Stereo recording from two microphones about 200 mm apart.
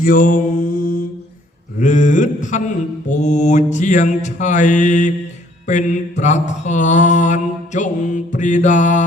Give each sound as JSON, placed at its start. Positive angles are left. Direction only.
{"t": 0.0, "sound": "mantra", "side_deg": 45}